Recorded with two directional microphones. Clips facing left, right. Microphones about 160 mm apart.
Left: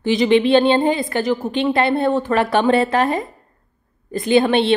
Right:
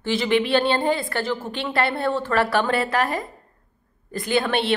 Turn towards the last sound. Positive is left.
turn(degrees=25)  # may be behind; listen again after turning